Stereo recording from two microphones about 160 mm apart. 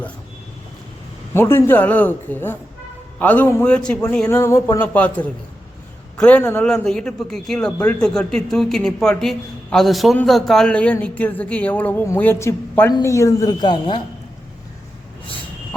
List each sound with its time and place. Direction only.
1.3 s a man's voice: 15° left (ahead or behind)